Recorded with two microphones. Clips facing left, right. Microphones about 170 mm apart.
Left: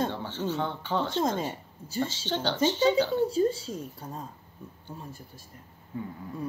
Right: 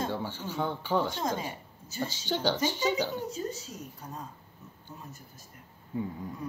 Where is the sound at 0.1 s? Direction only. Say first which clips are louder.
Left 3 dB; 10° right (ahead or behind).